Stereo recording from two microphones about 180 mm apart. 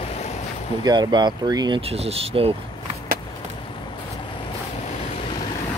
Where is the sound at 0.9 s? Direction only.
25° right (ahead or behind).